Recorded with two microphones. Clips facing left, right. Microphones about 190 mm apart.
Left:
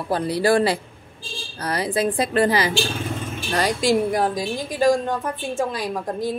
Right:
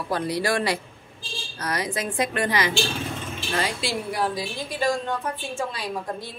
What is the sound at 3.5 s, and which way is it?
A woman's voice, 45° left (ahead or behind).